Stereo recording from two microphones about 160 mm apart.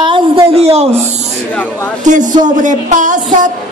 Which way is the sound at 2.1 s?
50° right (ahead or behind).